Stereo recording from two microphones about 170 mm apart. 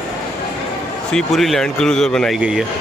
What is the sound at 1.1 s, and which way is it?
Speech, centre (ahead or behind).